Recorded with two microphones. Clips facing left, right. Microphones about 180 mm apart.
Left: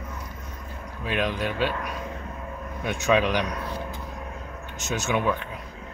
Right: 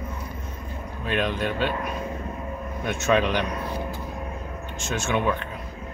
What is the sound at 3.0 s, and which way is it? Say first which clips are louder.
Speech: even; 5° left (ahead or behind).